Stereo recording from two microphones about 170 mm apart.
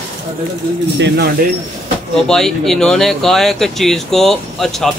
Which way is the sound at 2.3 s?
5° left (ahead or behind).